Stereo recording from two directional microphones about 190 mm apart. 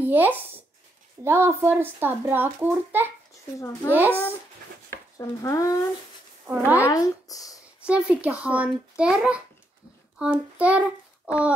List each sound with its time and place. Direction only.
0.0 s a child's voice: 10° right (ahead or behind)
3.5 s speech: 15° left (ahead or behind)
6.4 s a child's voice: 10° right (ahead or behind)
6.8 s speech: 20° left (ahead or behind)
7.8 s a child's voice: 5° right (ahead or behind)